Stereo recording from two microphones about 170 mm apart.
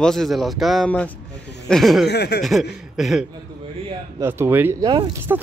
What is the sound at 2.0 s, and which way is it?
Speech, 75° left (ahead or behind).